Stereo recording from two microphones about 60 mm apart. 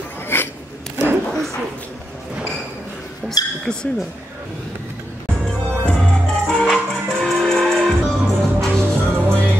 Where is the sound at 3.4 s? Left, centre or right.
Left.